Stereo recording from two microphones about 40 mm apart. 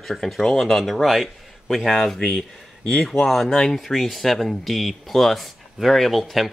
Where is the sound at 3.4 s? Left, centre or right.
Centre.